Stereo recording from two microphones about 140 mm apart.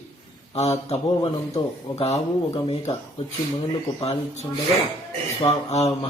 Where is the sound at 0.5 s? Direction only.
50° left (ahead or behind).